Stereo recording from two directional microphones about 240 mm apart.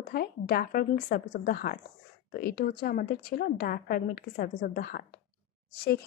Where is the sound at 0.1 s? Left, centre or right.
Left.